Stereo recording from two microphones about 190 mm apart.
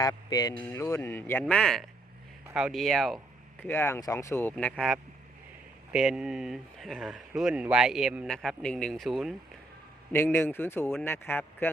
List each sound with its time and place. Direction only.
0.0 s speech: 20° left (ahead or behind); by 3.2 s centre (ahead or behind)
3.6 s speech: 10° left (ahead or behind)
10.3 s speech: 10° left (ahead or behind)